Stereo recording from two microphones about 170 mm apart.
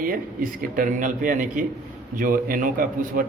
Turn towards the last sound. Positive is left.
turn(degrees=-55)  # may be behind; listen again after turning